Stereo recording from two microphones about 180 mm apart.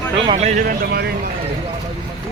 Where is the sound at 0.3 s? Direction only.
40° right (ahead or behind); by 1.1 s 55° right (ahead or behind).